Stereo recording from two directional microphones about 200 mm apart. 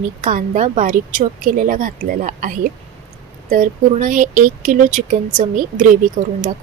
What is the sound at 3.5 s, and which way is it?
Speech, 40° right (ahead or behind).